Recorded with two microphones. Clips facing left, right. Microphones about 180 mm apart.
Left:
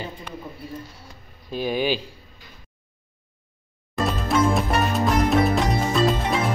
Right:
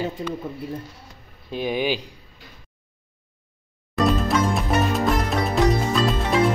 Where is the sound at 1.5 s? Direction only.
20° right (ahead or behind).